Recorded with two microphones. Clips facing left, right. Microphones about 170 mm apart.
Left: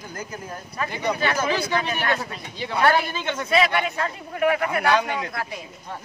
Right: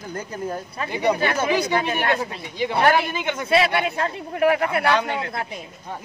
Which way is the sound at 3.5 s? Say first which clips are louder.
Right 2 dB; 30° right (ahead or behind).